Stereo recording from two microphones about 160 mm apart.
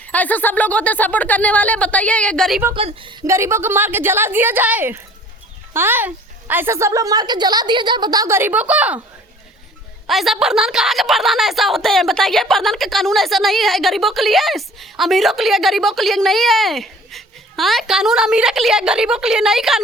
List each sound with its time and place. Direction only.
0.0 s speech: 10° left (ahead or behind)
2.7 s a woman's voice: 35° right (ahead or behind)
3.2 s a woman's voice: 15° right (ahead or behind)
10.1 s a woman's voice: centre (ahead or behind)